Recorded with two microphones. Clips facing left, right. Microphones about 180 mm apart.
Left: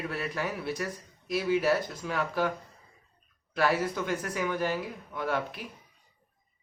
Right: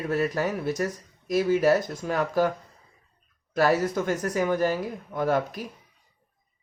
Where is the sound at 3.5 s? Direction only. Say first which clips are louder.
Right 5 dB; 45° right (ahead or behind).